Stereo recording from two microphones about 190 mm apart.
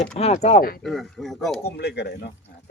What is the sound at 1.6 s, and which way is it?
Speech, 60° left (ahead or behind).